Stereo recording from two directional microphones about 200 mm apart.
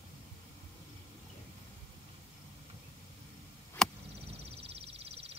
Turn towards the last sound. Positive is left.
turn(degrees=-30)  # may be behind; listen again after turning